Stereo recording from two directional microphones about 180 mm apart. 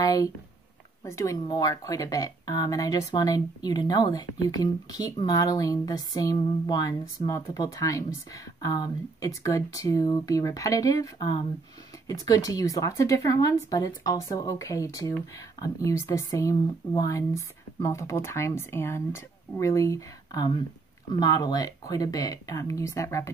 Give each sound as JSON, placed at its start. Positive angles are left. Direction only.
{"t": 0.0, "sound": "speech", "side_deg": 20}